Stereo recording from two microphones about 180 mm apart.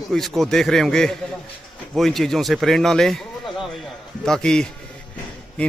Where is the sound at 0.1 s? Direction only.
Centre (ahead or behind).